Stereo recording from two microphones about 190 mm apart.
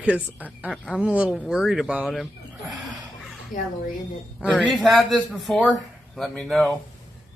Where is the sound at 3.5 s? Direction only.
45° left (ahead or behind).